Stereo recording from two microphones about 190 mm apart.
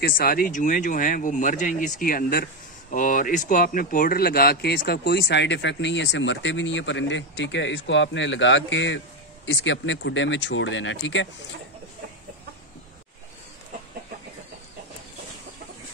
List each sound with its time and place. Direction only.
0.0 s speech: 50° left (ahead or behind); by 11.2 s 75° left (ahead or behind)